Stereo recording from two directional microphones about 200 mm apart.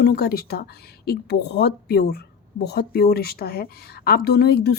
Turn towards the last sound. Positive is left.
turn(degrees=50)  # may be behind; listen again after turning